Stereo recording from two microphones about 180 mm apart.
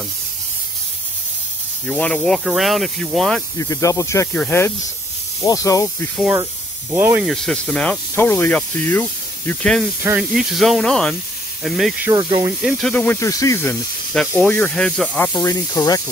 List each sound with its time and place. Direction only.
1.9 s speech: 5° left (ahead or behind)
3.5 s speech: 20° left (ahead or behind)
6.9 s speech: 15° right (ahead or behind)
7.2 s speech: 5° left (ahead or behind)
10.0 s speech: 5° right (ahead or behind)
12.1 s speech: 25° right (ahead or behind)
12.6 s speech: 5° left (ahead or behind)
15.3 s speech: 20° left (ahead or behind)